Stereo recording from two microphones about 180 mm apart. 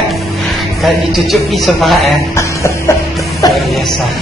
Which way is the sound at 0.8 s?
Centre (ahead or behind).